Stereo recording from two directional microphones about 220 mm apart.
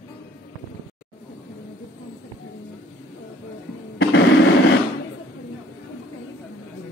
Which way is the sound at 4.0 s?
55° left (ahead or behind).